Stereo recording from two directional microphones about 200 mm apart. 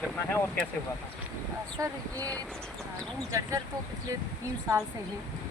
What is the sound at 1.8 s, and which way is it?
Speech, 20° right (ahead or behind).